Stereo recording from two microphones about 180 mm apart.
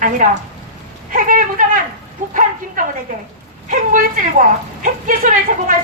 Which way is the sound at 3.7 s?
45° right (ahead or behind).